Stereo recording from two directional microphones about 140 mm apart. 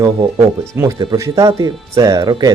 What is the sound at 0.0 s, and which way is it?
A man's voice, 30° right (ahead or behind).